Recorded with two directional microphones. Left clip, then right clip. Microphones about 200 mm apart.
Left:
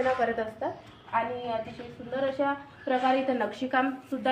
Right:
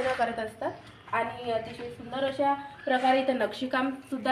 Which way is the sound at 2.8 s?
Centre (ahead or behind).